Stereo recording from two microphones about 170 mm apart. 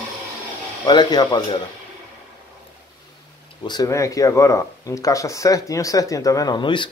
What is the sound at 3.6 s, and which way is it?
Speech, 20° left (ahead or behind).